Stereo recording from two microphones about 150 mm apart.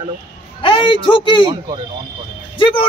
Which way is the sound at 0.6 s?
35° left (ahead or behind).